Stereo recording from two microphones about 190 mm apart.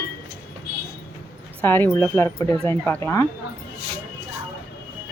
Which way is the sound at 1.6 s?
10° left (ahead or behind).